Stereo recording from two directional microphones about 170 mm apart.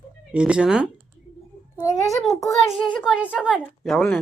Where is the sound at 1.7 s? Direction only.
20° left (ahead or behind).